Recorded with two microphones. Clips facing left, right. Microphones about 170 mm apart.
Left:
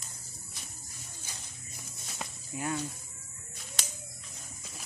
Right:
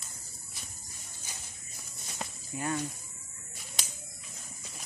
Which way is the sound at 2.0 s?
Centre (ahead or behind).